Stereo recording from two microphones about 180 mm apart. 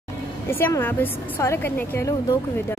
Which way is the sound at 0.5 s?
15° left (ahead or behind).